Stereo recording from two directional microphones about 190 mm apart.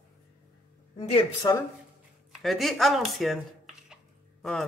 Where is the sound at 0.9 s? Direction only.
35° left (ahead or behind).